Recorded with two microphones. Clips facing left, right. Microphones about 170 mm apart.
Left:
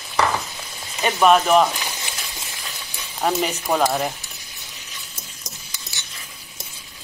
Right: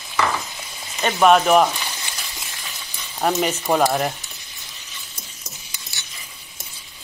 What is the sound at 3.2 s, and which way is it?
Speech, centre (ahead or behind).